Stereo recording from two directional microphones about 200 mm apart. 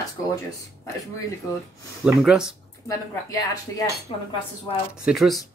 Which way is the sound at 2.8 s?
15° left (ahead or behind).